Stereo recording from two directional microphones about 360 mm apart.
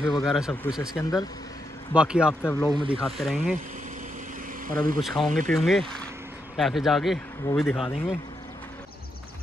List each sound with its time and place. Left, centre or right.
0.1 s speech: centre
2.0 s speech: centre
2.7 s speech: centre
3.2 s speech: centre
4.6 s speech: right
5.0 s speech: centre